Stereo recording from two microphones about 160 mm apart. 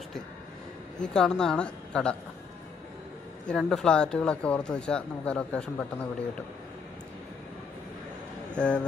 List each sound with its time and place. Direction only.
1.0 s speech: 5° left (ahead or behind)
3.4 s speech: 5° left (ahead or behind)
8.5 s speech: 5° left (ahead or behind)